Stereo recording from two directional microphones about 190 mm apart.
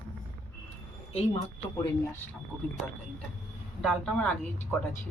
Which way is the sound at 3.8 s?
5° left (ahead or behind).